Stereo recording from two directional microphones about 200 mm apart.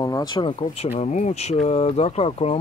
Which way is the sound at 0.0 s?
20° left (ahead or behind).